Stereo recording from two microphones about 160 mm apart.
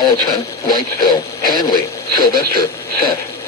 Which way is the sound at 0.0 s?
25° left (ahead or behind).